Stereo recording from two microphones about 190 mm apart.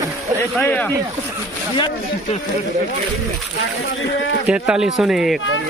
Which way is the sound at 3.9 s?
80° left.